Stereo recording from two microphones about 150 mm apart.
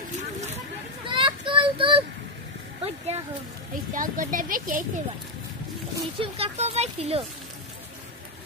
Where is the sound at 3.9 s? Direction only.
65° right (ahead or behind).